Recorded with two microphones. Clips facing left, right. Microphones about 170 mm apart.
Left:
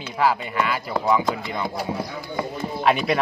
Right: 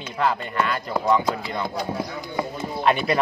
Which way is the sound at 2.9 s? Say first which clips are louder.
Left 1 dB; centre (ahead or behind).